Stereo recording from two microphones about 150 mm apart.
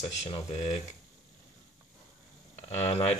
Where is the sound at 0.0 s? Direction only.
45° left (ahead or behind).